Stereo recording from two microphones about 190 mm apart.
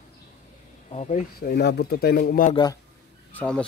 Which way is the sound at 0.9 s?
35° left (ahead or behind).